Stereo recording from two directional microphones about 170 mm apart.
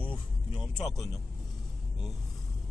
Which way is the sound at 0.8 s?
Centre (ahead or behind).